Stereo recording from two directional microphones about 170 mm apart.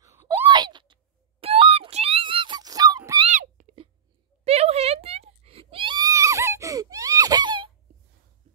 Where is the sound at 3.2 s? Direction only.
45° right (ahead or behind).